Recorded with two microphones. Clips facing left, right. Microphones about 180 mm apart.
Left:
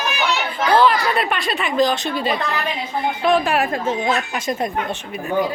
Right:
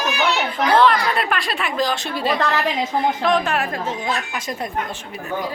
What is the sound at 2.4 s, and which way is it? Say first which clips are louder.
Speech: right 3 dB; 90° right.